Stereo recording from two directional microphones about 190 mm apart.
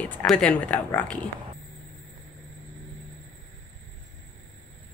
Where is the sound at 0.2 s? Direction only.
5° left (ahead or behind).